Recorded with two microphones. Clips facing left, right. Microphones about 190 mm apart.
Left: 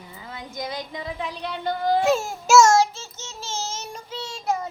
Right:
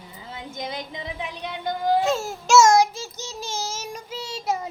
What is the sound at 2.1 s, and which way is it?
Babbling, 10° left (ahead or behind).